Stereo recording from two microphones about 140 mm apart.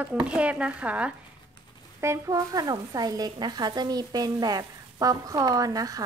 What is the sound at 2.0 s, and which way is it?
Speech, 20° right (ahead or behind).